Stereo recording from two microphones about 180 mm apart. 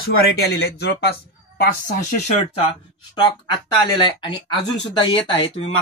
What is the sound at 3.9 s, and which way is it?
Speech, 25° left (ahead or behind).